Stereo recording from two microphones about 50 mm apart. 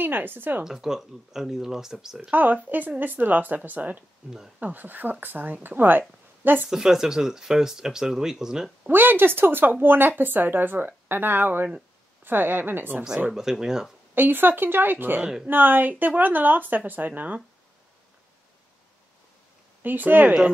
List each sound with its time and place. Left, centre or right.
0.0 s speech: right
0.7 s speech: centre
2.3 s speech: right
6.7 s speech: centre
8.9 s speech: right
13.3 s speech: centre
14.1 s speech: right
19.8 s speech: right